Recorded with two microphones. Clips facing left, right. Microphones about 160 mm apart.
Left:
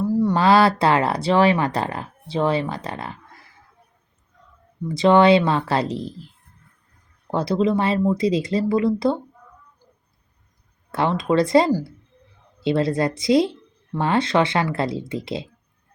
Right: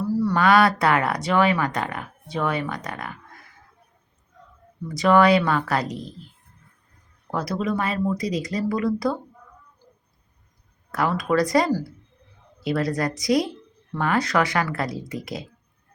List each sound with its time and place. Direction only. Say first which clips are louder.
0.0 s speech: left 2 dB; 20° left (ahead or behind)
4.9 s speech: left 3 dB; 25° left (ahead or behind)
7.3 s speech: left 5 dB; 25° left (ahead or behind)
10.9 s speech: left 2 dB; 25° left (ahead or behind)